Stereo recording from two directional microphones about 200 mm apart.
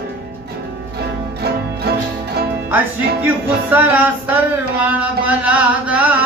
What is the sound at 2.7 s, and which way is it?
Music, 10° right (ahead or behind).